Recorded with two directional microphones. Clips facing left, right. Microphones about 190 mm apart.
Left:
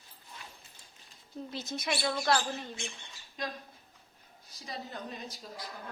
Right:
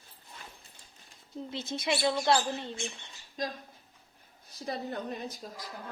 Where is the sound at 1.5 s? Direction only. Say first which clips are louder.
Right 3 dB; 25° right (ahead or behind).